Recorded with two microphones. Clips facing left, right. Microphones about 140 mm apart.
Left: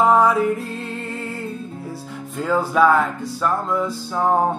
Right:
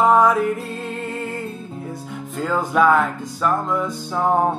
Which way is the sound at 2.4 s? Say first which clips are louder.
Left 1 dB; centre (ahead or behind).